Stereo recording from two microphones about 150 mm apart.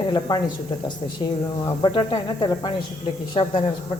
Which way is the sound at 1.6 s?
30° left (ahead or behind).